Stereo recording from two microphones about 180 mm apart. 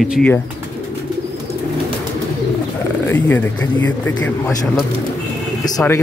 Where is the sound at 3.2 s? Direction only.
10° left (ahead or behind).